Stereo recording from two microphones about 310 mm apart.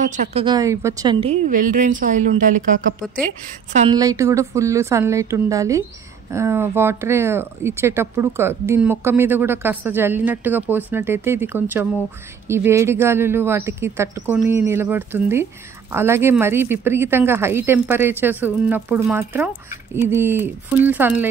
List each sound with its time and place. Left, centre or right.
0.0 s a woman's voice: right; by 21.3 s centre